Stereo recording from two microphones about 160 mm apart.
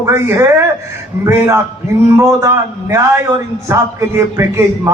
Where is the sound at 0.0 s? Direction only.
15° right (ahead or behind).